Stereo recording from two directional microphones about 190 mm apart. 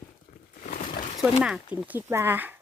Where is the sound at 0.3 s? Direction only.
45° left (ahead or behind).